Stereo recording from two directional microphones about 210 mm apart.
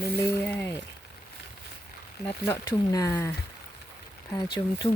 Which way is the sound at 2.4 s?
15° left (ahead or behind).